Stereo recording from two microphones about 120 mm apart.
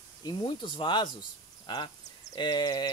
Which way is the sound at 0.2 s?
40° left (ahead or behind).